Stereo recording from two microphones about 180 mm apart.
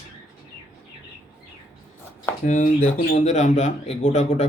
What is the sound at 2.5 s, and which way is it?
Speech, 45° left (ahead or behind).